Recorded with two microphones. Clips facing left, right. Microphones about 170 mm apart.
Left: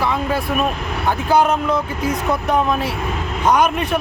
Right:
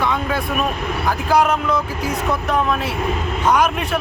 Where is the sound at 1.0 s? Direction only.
30° left (ahead or behind).